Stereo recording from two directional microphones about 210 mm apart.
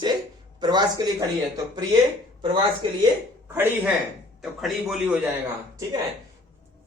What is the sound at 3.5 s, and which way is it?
A man's voice, 10° right (ahead or behind).